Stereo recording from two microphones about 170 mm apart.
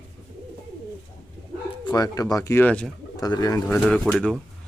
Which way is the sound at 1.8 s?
25° left (ahead or behind).